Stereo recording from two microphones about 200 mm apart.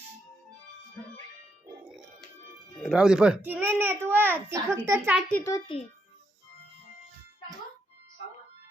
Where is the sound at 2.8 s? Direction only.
5° right (ahead or behind).